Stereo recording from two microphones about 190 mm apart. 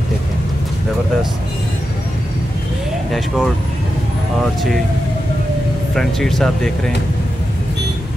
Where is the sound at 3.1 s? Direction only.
Centre (ahead or behind).